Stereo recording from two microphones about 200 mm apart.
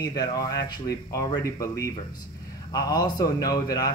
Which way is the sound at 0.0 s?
20° left (ahead or behind).